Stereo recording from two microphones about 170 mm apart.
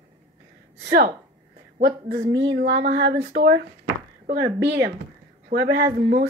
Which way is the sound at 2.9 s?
75° right (ahead or behind).